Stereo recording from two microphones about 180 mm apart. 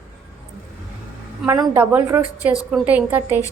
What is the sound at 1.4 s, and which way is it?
A woman's voice, 15° right (ahead or behind).